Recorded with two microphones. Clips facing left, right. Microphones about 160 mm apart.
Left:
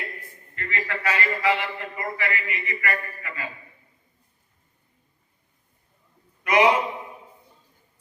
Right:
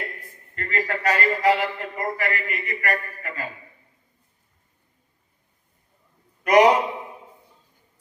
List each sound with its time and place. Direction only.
0.5 s a man's voice: 40° right (ahead or behind)
6.4 s a man's voice: 40° right (ahead or behind)